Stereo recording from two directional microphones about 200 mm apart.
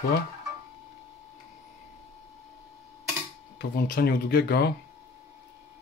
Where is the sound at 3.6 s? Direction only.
50° left (ahead or behind).